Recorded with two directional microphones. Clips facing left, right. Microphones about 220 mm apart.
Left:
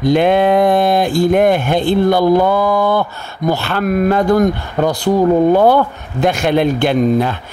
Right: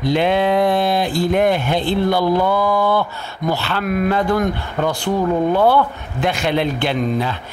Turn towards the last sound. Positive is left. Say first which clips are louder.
# left 6 dB
turn(degrees=50)  # may be behind; listen again after turning